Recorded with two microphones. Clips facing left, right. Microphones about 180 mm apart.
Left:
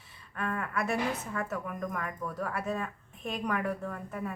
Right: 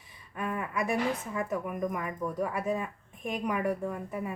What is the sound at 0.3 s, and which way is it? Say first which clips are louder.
A woman's voice: right 1 dB; 15° right (ahead or behind).